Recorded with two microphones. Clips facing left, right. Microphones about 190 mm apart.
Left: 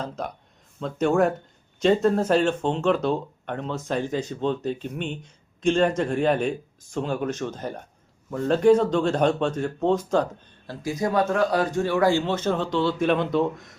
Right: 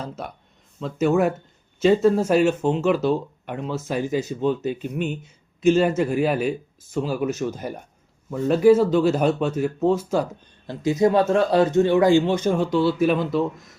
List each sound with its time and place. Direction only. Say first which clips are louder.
0.2 s speech: left 2 dB; 5° right (ahead or behind)
10.7 s speech: right 7 dB; 25° right (ahead or behind); by 13.7 s centre (ahead or behind)